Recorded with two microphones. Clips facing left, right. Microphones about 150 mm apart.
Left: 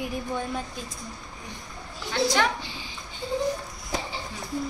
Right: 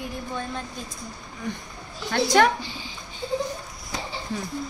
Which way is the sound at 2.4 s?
50° right (ahead or behind).